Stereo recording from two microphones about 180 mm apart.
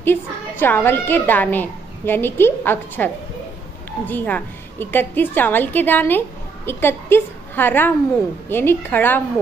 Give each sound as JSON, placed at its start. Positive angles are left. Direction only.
{"t": 0.0, "sound": "a woman's voice", "side_deg": 10}